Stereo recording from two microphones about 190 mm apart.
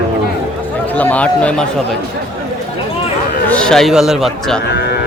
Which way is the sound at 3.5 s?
5° left (ahead or behind).